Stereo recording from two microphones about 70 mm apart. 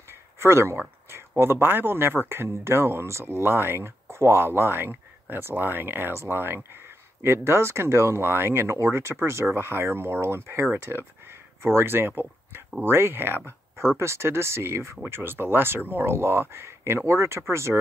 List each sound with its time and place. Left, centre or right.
0.1 s speech: right